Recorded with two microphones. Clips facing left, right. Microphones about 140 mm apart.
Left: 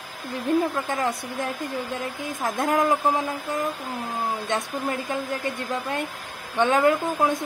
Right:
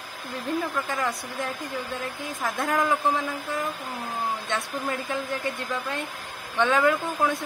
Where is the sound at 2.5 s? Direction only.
20° left (ahead or behind).